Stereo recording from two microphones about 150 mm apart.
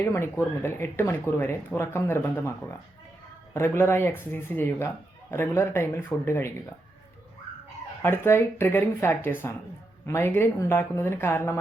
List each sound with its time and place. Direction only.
0.0 s speech: 20° left (ahead or behind)
8.0 s speech: 15° left (ahead or behind)